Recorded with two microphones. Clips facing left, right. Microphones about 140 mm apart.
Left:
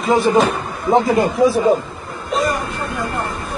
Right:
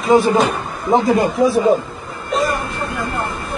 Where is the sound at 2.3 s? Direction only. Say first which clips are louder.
Right 1 dB; centre (ahead or behind).